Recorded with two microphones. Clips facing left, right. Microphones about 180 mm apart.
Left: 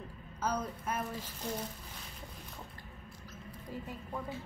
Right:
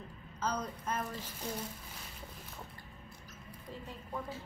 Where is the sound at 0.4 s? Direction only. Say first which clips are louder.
Left 1 dB; 10° left (ahead or behind).